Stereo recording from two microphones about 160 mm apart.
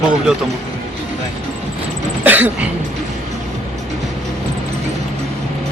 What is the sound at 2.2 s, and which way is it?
Speech, 10° right (ahead or behind).